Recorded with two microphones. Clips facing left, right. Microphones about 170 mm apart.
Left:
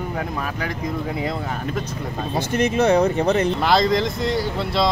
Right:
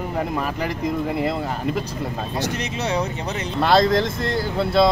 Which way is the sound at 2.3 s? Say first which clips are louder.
Left 9 dB; 50° left (ahead or behind).